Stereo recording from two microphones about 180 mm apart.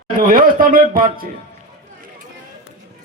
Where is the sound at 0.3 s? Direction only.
50° right (ahead or behind).